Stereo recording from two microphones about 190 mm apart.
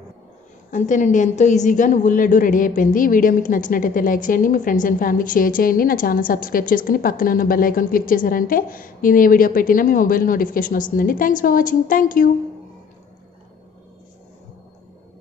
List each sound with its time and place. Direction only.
0.7 s a woman's voice: 40° left (ahead or behind)